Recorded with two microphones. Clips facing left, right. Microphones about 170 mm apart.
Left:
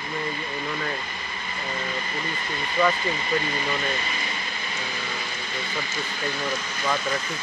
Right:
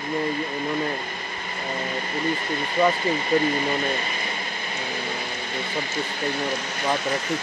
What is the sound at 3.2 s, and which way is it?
Air conditioning, 50° right (ahead or behind).